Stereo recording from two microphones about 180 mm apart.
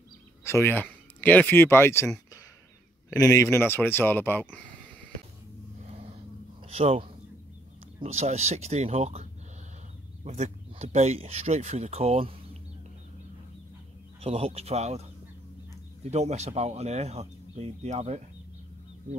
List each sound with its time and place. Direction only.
0.4 s speech: 15° left (ahead or behind)
3.3 s speech: 15° left (ahead or behind)
6.7 s speech: 35° right (ahead or behind)
14.2 s speech: 35° right (ahead or behind)